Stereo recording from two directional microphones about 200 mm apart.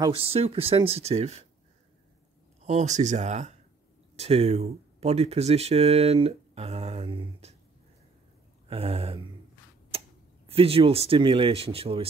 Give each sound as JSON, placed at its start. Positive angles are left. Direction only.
{"t": 0.0, "sound": "speech", "side_deg": -30}
{"t": 2.6, "sound": "speech", "side_deg": -35}
{"t": 8.6, "sound": "a sound", "side_deg": -30}
{"t": 9.8, "sound": "speech", "side_deg": -30}